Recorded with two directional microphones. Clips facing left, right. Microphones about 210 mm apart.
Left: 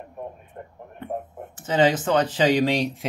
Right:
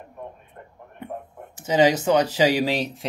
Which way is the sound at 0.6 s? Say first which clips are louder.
Left 5 dB; 25° left (ahead or behind).